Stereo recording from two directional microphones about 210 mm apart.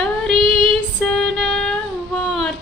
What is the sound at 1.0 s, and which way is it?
Music, centre (ahead or behind).